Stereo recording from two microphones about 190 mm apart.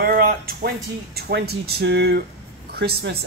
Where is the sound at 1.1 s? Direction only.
55° right (ahead or behind).